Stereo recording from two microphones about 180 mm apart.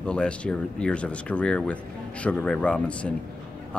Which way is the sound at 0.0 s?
5° left (ahead or behind).